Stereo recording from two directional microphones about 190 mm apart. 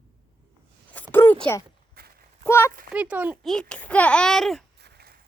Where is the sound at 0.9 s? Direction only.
10° left (ahead or behind).